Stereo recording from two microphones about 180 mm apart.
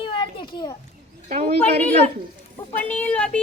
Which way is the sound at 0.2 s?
25° left (ahead or behind).